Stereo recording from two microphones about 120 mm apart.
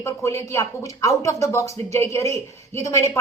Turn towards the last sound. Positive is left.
turn(degrees=25)  # may be behind; listen again after turning